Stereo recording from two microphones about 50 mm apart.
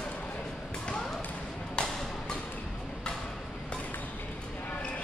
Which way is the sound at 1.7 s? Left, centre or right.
Centre.